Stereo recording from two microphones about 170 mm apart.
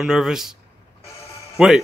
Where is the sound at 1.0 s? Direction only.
15° left (ahead or behind).